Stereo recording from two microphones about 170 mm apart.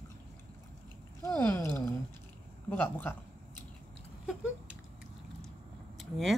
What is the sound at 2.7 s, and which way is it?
Speech, 10° left (ahead or behind).